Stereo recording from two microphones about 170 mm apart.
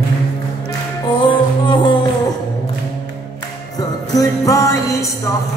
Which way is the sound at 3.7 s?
20° left (ahead or behind).